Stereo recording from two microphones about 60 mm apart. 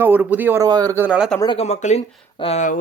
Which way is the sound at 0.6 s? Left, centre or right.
Right.